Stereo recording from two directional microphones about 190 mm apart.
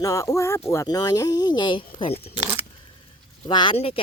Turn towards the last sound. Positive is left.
turn(degrees=30)  # may be behind; listen again after turning